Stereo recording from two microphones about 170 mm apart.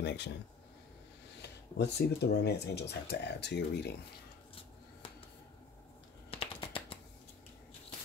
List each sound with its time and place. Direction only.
0.0 s speech: 80° left
1.8 s speech: 75° left (ahead or behind)
6.3 s typing: 30° left (ahead or behind)